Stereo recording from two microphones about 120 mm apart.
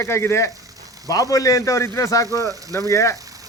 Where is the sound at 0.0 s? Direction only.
20° left (ahead or behind).